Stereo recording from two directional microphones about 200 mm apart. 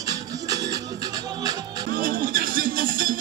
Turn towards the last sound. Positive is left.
turn(degrees=-45)  # may be behind; listen again after turning